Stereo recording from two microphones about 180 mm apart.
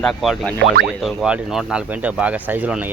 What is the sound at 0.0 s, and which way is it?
Speech, centre (ahead or behind).